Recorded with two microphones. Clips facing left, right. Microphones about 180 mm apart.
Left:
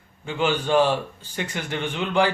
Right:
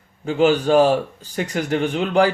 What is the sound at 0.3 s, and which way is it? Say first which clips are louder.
Speech: right 7 dB; 40° right (ahead or behind).